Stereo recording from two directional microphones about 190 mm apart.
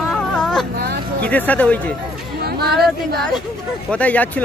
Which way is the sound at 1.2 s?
10° left (ahead or behind).